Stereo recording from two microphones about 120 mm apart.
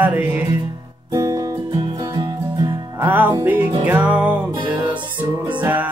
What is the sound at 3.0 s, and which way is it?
Music, 15° right (ahead or behind).